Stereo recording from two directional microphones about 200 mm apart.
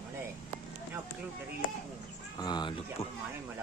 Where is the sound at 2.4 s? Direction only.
20° left (ahead or behind).